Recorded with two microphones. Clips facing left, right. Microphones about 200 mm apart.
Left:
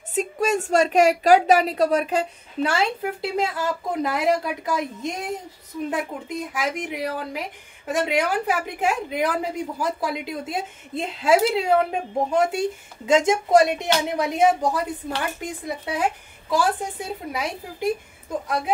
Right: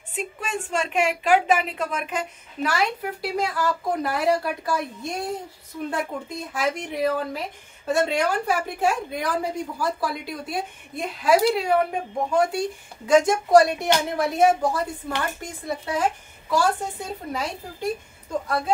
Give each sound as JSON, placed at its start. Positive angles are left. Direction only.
{"t": 0.1, "sound": "a woman's voice", "side_deg": 40}